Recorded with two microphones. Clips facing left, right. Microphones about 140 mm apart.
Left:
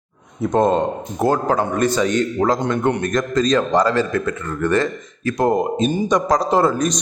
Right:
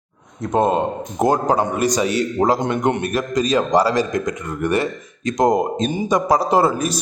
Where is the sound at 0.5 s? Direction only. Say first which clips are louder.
Left 1 dB; 10° right (ahead or behind).